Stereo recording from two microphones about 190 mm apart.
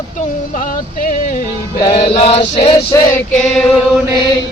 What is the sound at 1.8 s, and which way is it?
Mantra, 30° left (ahead or behind).